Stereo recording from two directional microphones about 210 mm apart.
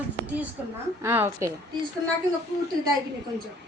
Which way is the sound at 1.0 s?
10° right (ahead or behind).